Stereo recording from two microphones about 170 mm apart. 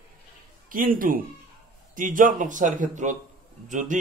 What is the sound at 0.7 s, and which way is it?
Speech, 55° right (ahead or behind).